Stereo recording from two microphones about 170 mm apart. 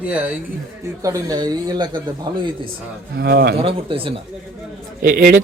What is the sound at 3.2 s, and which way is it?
Speech, 75° right (ahead or behind).